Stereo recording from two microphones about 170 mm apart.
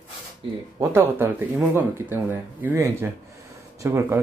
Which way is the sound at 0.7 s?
15° right (ahead or behind).